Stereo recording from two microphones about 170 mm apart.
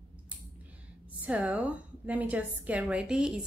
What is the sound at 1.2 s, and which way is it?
A woman's voice, 10° right (ahead or behind).